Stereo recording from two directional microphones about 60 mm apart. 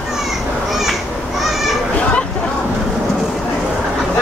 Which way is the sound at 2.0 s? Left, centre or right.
Centre.